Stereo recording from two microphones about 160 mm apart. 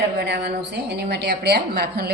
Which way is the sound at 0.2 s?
90° right.